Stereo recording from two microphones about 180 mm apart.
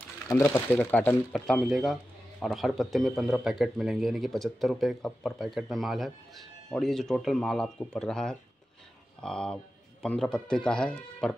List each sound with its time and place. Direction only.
0.3 s speech: 20° left (ahead or behind)
0.7 s speech: 5° left (ahead or behind)